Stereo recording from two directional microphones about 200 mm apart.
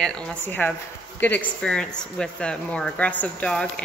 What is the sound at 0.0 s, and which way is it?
Speech, 5° left (ahead or behind).